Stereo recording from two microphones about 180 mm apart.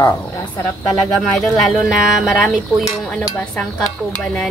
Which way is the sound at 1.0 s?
Centre (ahead or behind).